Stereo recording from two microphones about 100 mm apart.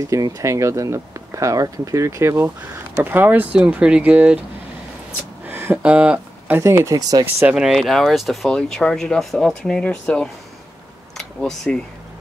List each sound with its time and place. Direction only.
0.1 s speech: 30° right (ahead or behind); by 4.4 s 15° right (ahead or behind)
5.5 s a sound: 25° right (ahead or behind)
5.8 s speech: 15° right (ahead or behind)
6.6 s speech: 30° right (ahead or behind)
7.4 s speech: 5° right (ahead or behind)